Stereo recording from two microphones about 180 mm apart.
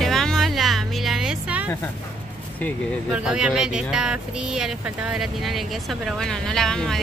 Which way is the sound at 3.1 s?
5° right (ahead or behind).